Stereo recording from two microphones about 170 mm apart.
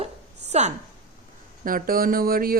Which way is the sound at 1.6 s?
55° right (ahead or behind).